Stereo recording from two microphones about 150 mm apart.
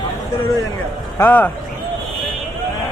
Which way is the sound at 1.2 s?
10° left (ahead or behind).